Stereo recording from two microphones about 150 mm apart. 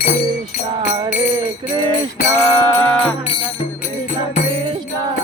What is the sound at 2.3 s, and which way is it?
Music, 15° left (ahead or behind).